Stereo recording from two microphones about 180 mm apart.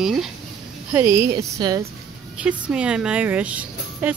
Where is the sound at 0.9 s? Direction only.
15° right (ahead or behind).